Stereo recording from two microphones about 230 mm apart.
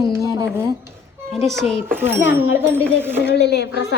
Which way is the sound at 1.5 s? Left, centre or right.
Centre.